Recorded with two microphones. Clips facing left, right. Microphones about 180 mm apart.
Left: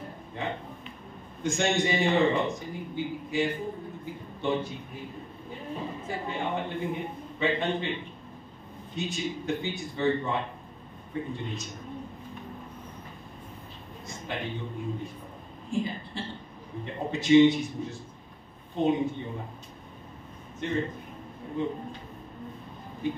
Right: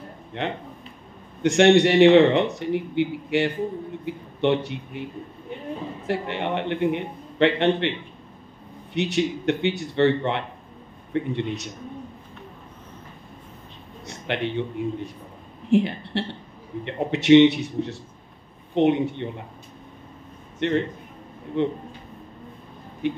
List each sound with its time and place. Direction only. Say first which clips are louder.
0.4 s a man's voice: right 5 dB; 70° right (ahead or behind)
6.0 s a man's voice: right 8 dB; 75° right (ahead or behind)
8.9 s a man's voice: right 9 dB; 70° right (ahead or behind)
14.0 s a sound: right 8 dB; 75° right (ahead or behind)
15.7 s a man's voice: right 10 dB; 70° right (ahead or behind)
20.5 s a man's voice: right 7 dB; 70° right (ahead or behind)
23.0 s a man's voice: right 5 dB; 70° right (ahead or behind)